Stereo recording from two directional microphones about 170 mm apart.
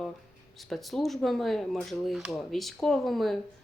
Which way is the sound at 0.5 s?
Centre (ahead or behind).